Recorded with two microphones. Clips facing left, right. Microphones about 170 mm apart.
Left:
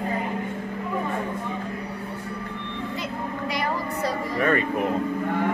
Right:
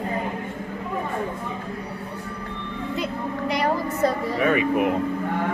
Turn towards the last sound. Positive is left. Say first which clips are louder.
# right 2 dB
turn(degrees=-5)  # may be behind; listen again after turning